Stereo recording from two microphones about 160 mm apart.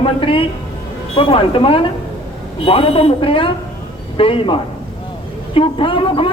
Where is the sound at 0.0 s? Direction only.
35° left (ahead or behind).